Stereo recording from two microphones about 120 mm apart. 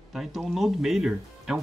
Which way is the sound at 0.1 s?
Centre (ahead or behind).